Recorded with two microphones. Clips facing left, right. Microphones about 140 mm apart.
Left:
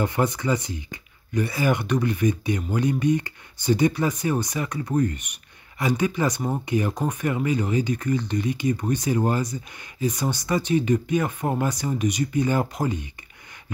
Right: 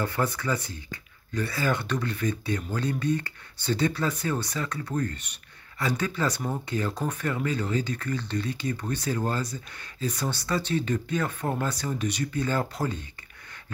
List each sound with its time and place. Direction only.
0.0 s speech: 20° left (ahead or behind)